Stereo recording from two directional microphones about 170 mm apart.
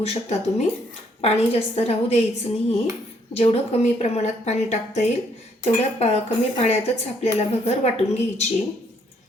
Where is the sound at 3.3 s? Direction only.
35° left (ahead or behind).